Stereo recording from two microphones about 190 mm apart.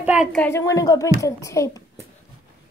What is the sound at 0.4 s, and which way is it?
A child's voice, 15° left (ahead or behind).